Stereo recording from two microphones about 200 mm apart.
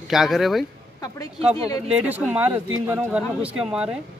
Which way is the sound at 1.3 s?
30° right (ahead or behind).